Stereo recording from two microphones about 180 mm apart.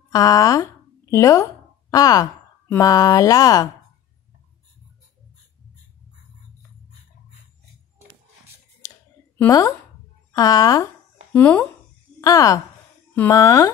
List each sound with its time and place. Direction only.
0.1 s speech: 20° left (ahead or behind)
9.5 s speech: 20° left (ahead or behind)
11.3 s a woman's voice: 10° left (ahead or behind)